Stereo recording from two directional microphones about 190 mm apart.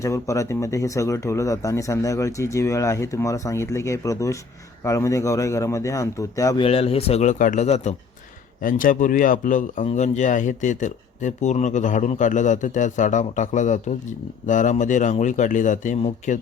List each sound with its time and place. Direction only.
0.0 s speech: 15° left (ahead or behind)
6.6 s speech: 30° left (ahead or behind)